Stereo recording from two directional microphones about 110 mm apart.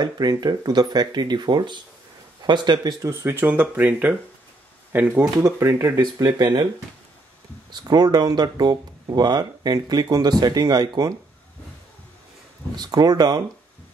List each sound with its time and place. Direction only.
0.0 s speech: 40° right (ahead or behind)
3.1 s speech: 25° right (ahead or behind)
5.4 s speech: 25° right (ahead or behind)
6.2 s speech: 40° right (ahead or behind)
7.7 s speech: 40° right (ahead or behind)
12.7 s speech: 40° right (ahead or behind)